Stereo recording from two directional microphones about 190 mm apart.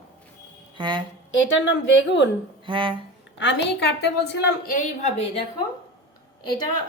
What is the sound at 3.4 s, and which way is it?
A woman's voice, 70° left (ahead or behind).